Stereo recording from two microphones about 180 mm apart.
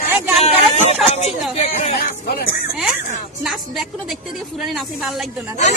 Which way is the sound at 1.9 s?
60° left (ahead or behind).